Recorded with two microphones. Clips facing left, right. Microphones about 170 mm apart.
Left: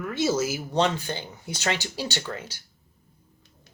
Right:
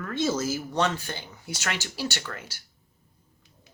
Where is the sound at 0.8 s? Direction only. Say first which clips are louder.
Left 5 dB; 20° left (ahead or behind).